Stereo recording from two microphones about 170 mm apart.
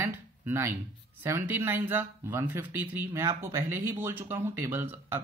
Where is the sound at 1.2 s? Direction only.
15° right (ahead or behind).